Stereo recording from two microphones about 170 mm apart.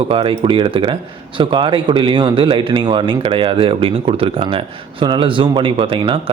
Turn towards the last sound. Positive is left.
turn(degrees=-30)  # may be behind; listen again after turning